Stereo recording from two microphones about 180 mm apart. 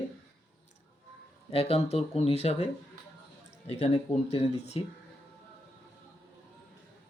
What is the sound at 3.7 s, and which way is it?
Speech, 35° left (ahead or behind).